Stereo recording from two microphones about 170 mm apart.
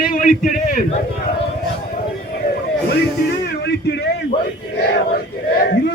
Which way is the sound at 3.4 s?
75° left (ahead or behind).